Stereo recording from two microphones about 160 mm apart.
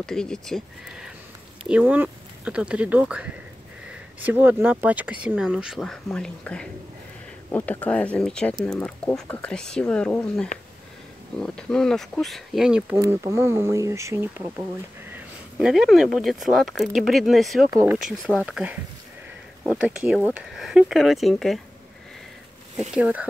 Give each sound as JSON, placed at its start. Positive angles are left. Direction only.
{"t": 0.0, "sound": "speech", "side_deg": 5}
{"t": 12.9, "sound": "speech", "side_deg": -20}
{"t": 15.1, "sound": "speech", "side_deg": -5}
{"t": 22.9, "sound": "speech", "side_deg": -5}